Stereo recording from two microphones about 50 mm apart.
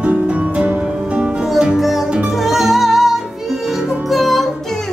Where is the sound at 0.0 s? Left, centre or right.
Right.